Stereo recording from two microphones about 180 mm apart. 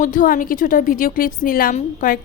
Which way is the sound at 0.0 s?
50° left (ahead or behind).